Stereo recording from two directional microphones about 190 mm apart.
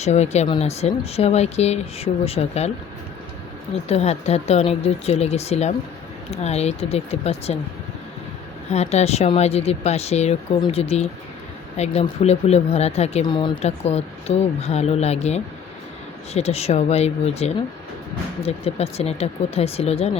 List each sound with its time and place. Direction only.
0.0 s speech: 35° left (ahead or behind)
3.8 s speech: 35° left (ahead or behind)
8.7 s speech: 35° left (ahead or behind)
13.2 s speech: 25° left (ahead or behind)
13.6 s speech: 35° left (ahead or behind)